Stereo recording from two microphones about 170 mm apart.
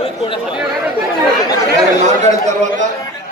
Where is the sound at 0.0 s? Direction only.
35° left (ahead or behind).